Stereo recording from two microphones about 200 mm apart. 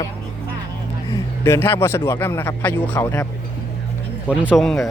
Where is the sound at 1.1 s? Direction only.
10° left (ahead or behind).